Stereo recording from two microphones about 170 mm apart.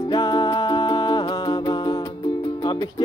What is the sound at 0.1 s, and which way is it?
Music, 25° left (ahead or behind).